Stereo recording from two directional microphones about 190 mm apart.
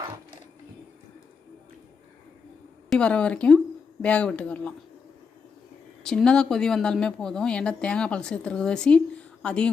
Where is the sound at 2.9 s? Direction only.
5° left (ahead or behind).